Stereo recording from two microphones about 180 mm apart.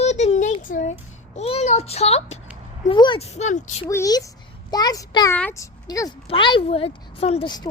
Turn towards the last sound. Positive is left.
turn(degrees=25)  # may be behind; listen again after turning